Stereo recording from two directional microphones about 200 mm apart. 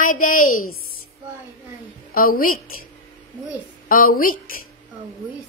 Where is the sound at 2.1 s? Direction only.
45° left (ahead or behind).